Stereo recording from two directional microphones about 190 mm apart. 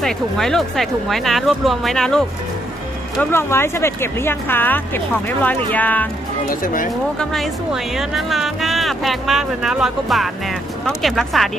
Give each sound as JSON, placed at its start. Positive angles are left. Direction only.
{"t": 0.0, "sound": "speech", "side_deg": 0}
{"t": 6.4, "sound": "speech", "side_deg": 45}
{"t": 7.2, "sound": "speech", "side_deg": 0}